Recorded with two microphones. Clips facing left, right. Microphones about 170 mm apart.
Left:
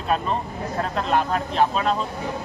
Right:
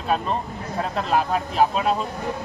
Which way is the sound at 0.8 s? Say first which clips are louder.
Even; 5° right (ahead or behind).